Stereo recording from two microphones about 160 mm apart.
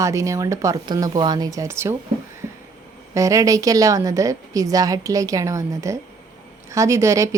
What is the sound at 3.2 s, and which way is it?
A woman's voice, 20° right (ahead or behind).